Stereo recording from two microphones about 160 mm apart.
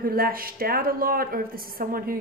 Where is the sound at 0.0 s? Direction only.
65° right (ahead or behind).